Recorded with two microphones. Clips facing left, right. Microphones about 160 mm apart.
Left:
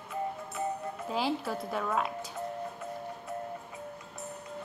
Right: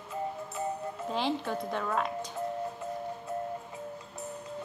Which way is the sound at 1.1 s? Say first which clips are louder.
Even; 5° left (ahead or behind).